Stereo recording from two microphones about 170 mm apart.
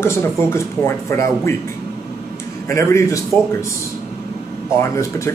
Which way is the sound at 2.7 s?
15° left (ahead or behind).